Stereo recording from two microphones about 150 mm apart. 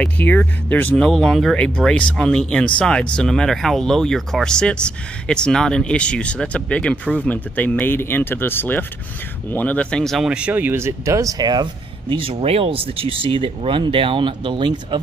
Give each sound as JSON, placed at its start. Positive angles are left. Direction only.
{"t": 0.0, "sound": "speech", "side_deg": 10}